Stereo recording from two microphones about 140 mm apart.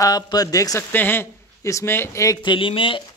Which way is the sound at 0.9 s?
15° left (ahead or behind).